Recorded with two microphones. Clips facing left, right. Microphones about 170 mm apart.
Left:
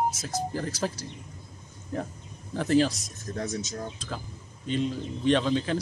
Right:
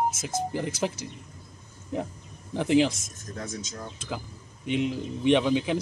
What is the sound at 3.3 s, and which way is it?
Speech, 40° left (ahead or behind).